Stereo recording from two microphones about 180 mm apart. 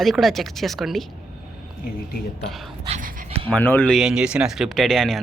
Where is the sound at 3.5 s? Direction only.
10° left (ahead or behind).